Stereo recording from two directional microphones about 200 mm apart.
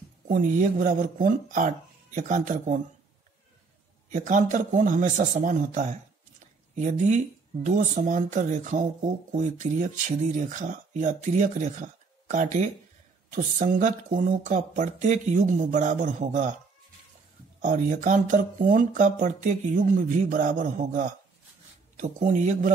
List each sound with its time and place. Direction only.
0.3 s speech: 40° right (ahead or behind)
4.1 s speech: 40° right (ahead or behind)
17.6 s speech: 40° right (ahead or behind)